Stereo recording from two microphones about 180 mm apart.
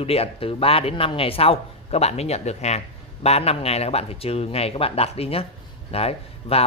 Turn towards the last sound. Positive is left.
turn(degrees=35)  # may be behind; listen again after turning